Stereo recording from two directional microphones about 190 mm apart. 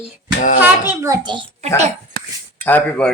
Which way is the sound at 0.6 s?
10° right (ahead or behind).